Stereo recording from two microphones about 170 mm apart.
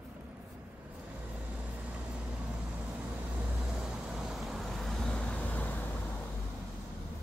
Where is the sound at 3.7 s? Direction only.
5° right (ahead or behind).